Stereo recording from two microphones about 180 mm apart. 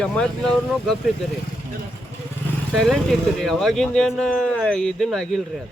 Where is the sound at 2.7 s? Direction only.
Centre (ahead or behind).